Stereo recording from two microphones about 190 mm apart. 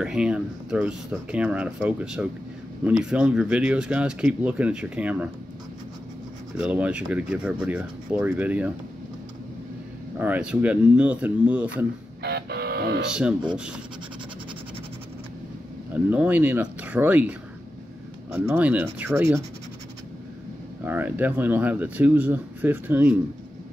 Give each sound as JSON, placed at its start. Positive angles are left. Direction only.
{"t": 0.0, "sound": "speech", "side_deg": -5}
{"t": 6.5, "sound": "speech", "side_deg": -5}
{"t": 10.1, "sound": "speech", "side_deg": -10}
{"t": 12.2, "sound": "music", "side_deg": -60}
{"t": 13.1, "sound": "speech", "side_deg": -5}
{"t": 15.9, "sound": "speech", "side_deg": -10}
{"t": 20.8, "sound": "speech", "side_deg": -10}